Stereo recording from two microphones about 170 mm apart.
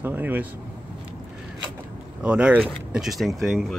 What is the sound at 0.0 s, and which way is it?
Speech, 10° right (ahead or behind).